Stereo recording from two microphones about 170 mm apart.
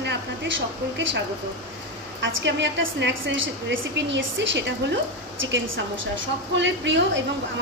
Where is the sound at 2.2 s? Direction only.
90° right.